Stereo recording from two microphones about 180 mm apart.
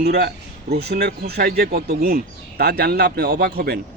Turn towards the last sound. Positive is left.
turn(degrees=-60)  # may be behind; listen again after turning